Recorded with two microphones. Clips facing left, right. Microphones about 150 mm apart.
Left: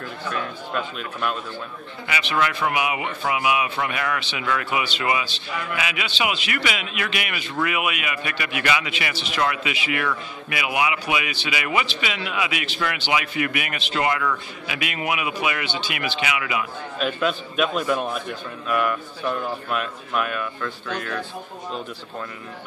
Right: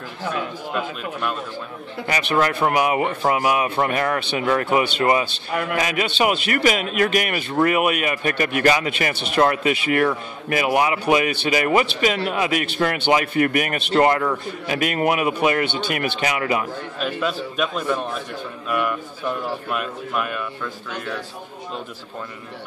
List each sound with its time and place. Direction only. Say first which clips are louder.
0.3 s a man's voice: right 2 dB; 5° right (ahead or behind)
2.0 s a man's voice: right 4 dB; 40° right (ahead or behind)
17.0 s a man's voice: left 1 dB; centre (ahead or behind)